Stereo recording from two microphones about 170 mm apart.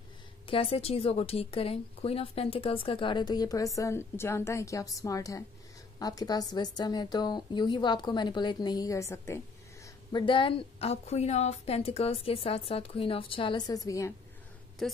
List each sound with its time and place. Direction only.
0.5 s a woman's voice: 35° left (ahead or behind); by 9.4 s 15° left (ahead or behind)
10.1 s a woman's voice: 30° left (ahead or behind)
14.8 s a woman's voice: centre (ahead or behind)